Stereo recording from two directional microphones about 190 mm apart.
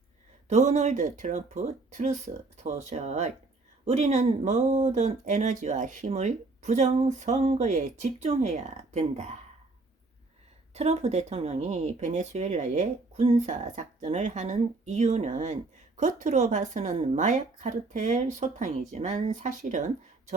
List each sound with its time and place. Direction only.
0.4 s speech: 40° right (ahead or behind)
10.8 s speech: 35° right (ahead or behind)